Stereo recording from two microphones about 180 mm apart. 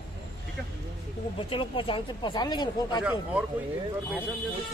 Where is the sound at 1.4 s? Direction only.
30° left (ahead or behind).